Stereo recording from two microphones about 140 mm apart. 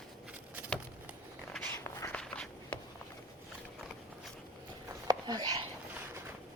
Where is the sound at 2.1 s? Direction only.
5° left (ahead or behind).